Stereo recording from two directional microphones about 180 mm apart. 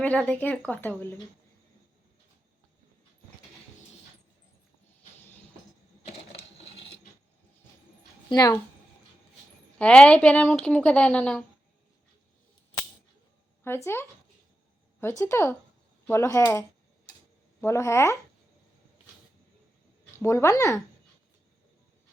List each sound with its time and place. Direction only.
0.0 s a woman's voice: 5° left (ahead or behind)
8.3 s speech: 20° left (ahead or behind)
9.7 s a woman's voice: 5° left (ahead or behind)
13.7 s a woman's voice: 15° left (ahead or behind)
15.2 s a woman's voice: 15° left (ahead or behind)
20.2 s a woman's voice: 15° left (ahead or behind)